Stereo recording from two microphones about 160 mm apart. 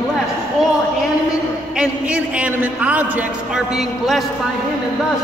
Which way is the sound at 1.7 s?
10° right (ahead or behind).